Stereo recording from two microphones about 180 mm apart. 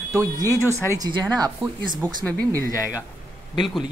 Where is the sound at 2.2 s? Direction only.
10° left (ahead or behind).